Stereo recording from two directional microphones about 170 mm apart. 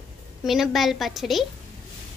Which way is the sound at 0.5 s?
Centre (ahead or behind).